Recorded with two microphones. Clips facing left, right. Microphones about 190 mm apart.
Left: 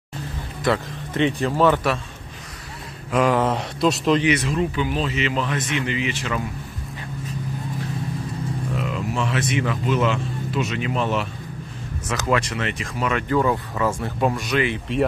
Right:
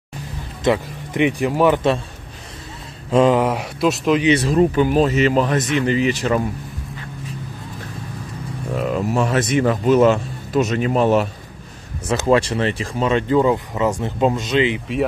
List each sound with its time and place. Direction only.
0.7 s speech: 15° right (ahead or behind)
3.1 s a sound: 25° right (ahead or behind)
3.3 s speech: 10° right (ahead or behind)
4.2 s a man's voice: 30° right (ahead or behind)
8.7 s speech: 45° right (ahead or behind)
12.1 s speech: 30° right (ahead or behind)